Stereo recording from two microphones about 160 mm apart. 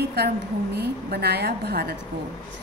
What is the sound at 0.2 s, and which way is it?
A woman's voice, 90° right.